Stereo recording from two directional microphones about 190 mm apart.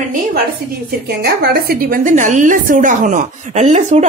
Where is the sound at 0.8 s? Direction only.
55° right (ahead or behind).